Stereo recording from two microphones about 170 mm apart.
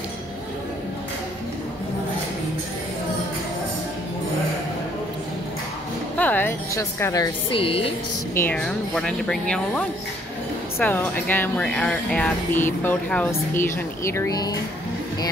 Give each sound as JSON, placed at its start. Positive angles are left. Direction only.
{"t": 6.1, "sound": "music", "side_deg": 10}
{"t": 7.5, "sound": "a woman's voice", "side_deg": 30}
{"t": 8.4, "sound": "speech", "side_deg": 10}